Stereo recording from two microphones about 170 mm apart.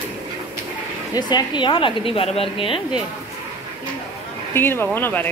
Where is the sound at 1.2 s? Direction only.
25° left (ahead or behind).